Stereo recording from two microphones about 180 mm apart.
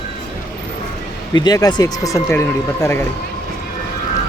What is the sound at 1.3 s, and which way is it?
Speech, 20° left (ahead or behind).